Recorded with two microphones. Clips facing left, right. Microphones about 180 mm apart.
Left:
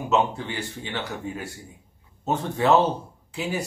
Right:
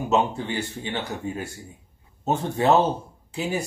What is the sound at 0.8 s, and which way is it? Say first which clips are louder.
Speech: right 2 dB; 45° right (ahead or behind).